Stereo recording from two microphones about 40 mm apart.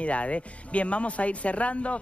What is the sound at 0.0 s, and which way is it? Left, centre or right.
Speech, left.